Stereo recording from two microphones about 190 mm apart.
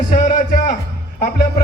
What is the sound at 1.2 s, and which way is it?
Speech, 55° left (ahead or behind).